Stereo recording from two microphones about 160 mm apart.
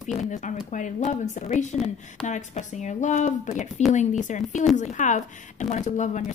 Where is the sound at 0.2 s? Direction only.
50° left (ahead or behind).